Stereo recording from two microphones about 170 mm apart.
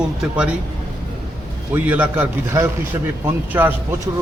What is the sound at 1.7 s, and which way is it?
A man's voice, 10° right (ahead or behind).